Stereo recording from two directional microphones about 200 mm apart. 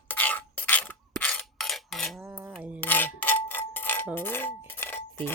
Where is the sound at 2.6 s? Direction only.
5° right (ahead or behind).